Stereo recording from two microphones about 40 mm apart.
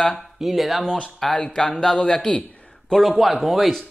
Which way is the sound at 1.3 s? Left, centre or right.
Centre.